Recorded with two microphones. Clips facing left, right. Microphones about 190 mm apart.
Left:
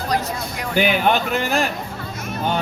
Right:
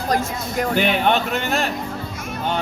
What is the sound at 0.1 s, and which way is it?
Speech, 45° right (ahead or behind).